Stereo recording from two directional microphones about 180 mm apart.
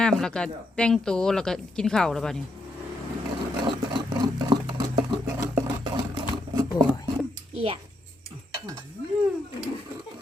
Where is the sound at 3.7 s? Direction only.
25° right (ahead or behind).